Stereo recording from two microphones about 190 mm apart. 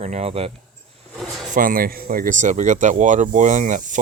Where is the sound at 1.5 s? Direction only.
50° right (ahead or behind).